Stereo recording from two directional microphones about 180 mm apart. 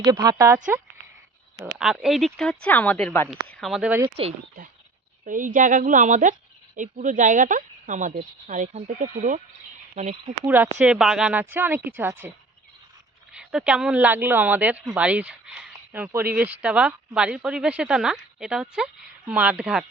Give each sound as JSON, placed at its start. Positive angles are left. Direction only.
{"t": 0.0, "sound": "speech", "side_deg": -20}
{"t": 1.8, "sound": "speech", "side_deg": 0}
{"t": 4.0, "sound": "speech", "side_deg": -35}
{"t": 5.2, "sound": "speech", "side_deg": -45}
{"t": 10.4, "sound": "speech", "side_deg": -10}
{"t": 13.3, "sound": "speech", "side_deg": -5}